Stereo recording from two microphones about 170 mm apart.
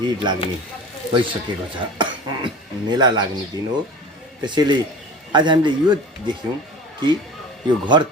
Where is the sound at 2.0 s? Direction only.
25° right (ahead or behind).